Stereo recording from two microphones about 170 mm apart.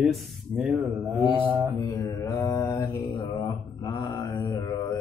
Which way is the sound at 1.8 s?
20° left (ahead or behind).